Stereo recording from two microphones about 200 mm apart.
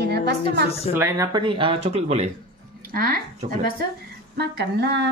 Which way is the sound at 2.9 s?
50° right (ahead or behind).